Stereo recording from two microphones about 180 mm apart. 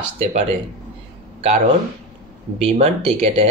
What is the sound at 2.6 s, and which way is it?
Speech, 30° right (ahead or behind).